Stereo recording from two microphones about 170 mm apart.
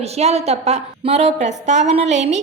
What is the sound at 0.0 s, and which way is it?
A woman's voice, 40° right (ahead or behind).